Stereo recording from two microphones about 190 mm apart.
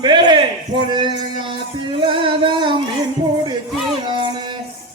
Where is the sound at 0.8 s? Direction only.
25° right (ahead or behind).